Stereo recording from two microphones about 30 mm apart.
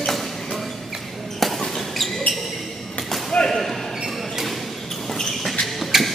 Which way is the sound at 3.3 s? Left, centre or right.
Left.